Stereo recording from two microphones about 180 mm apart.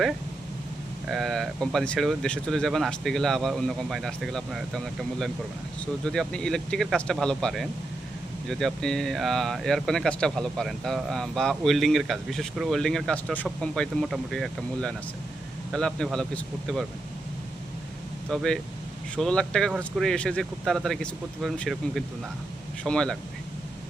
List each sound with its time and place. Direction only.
1.0 s speech: centre (ahead or behind)
5.8 s speech: 5° left (ahead or behind)
18.3 s speech: 5° left (ahead or behind)